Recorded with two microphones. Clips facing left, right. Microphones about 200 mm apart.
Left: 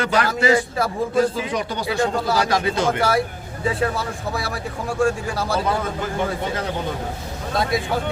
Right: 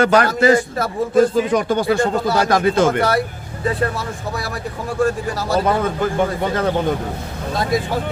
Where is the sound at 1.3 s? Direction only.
50° right (ahead or behind).